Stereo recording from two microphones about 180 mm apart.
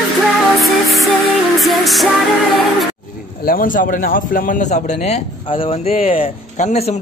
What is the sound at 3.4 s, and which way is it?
A man's voice, 50° left (ahead or behind).